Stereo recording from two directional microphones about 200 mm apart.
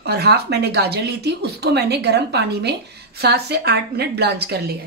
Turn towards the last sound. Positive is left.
turn(degrees=-55)  # may be behind; listen again after turning